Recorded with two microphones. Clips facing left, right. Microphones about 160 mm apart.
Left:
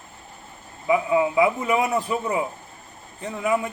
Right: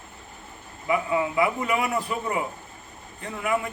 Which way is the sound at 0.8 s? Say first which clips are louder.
Left 4 dB; 20° left (ahead or behind).